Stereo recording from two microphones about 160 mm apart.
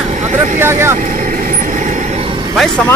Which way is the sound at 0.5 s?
15° right (ahead or behind).